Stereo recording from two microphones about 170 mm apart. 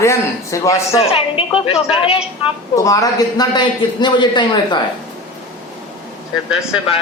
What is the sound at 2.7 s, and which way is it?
A man's voice, 20° left (ahead or behind).